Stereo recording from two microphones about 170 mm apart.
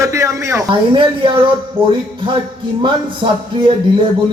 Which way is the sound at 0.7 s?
30° right (ahead or behind).